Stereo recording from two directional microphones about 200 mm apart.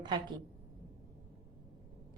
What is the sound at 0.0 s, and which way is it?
Speech, 20° right (ahead or behind).